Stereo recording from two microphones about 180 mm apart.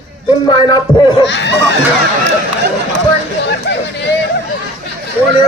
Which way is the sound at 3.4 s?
75° left (ahead or behind).